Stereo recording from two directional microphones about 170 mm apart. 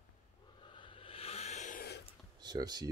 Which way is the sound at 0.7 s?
30° left (ahead or behind).